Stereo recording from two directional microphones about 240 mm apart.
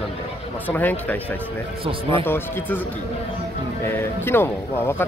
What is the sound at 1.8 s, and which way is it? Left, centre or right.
Speech, right.